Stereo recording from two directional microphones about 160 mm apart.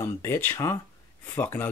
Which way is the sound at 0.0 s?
15° left (ahead or behind).